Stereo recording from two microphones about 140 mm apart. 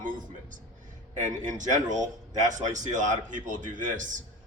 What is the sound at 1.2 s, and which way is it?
A man's voice, 60° right (ahead or behind).